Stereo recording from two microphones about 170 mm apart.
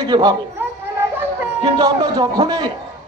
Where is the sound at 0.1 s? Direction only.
25° right (ahead or behind).